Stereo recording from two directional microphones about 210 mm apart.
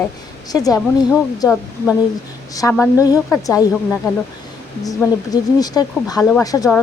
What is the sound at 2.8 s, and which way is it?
A woman's voice, 15° left (ahead or behind).